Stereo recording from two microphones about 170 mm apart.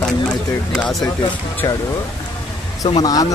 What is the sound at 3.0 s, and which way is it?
Speech, 20° left (ahead or behind).